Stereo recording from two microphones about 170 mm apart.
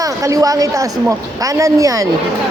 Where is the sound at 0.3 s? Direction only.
20° right (ahead or behind).